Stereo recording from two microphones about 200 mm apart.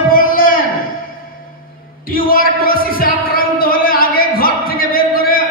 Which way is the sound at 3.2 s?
45° left (ahead or behind).